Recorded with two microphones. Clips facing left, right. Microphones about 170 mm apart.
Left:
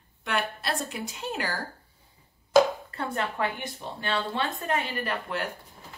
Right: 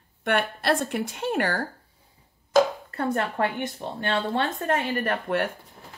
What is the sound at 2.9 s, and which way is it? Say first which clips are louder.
Speech: right 5 dB; 50° right (ahead or behind).